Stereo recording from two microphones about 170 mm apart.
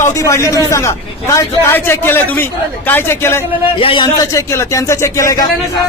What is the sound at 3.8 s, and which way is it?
A man's voice, 30° left (ahead or behind).